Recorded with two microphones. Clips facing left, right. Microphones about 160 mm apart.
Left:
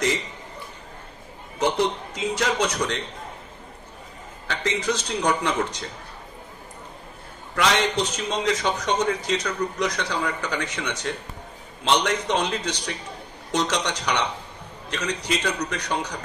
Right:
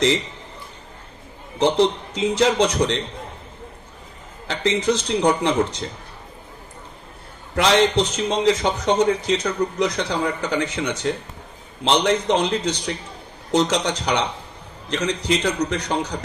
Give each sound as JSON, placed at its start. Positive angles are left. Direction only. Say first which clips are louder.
{"t": 1.6, "sound": "a man's voice", "louder": "right 5 dB", "side_deg": -25}
{"t": 4.5, "sound": "a man's voice", "louder": "right 5 dB", "side_deg": -30}
{"t": 7.5, "sound": "a man's voice", "louder": "right 5 dB", "side_deg": -30}